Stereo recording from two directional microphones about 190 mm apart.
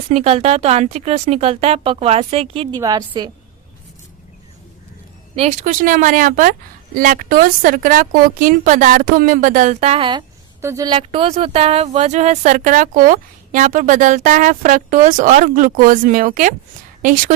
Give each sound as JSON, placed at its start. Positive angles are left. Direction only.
{"t": 0.1, "sound": "speech", "side_deg": -35}
{"t": 5.4, "sound": "speech", "side_deg": -40}
{"t": 10.6, "sound": "speech", "side_deg": -15}